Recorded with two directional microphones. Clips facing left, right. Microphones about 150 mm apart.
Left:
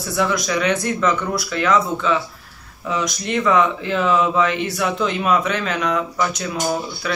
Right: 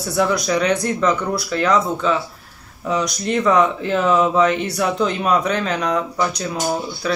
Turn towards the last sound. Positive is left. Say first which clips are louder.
# right 1 dB
turn(degrees=-35)  # may be behind; listen again after turning